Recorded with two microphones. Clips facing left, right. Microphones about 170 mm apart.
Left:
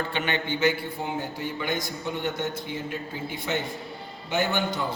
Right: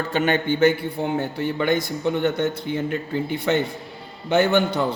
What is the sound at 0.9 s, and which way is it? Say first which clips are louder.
Speech: right 7 dB; 65° right (ahead or behind).